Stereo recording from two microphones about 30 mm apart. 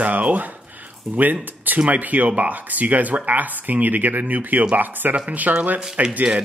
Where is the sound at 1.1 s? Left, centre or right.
Centre.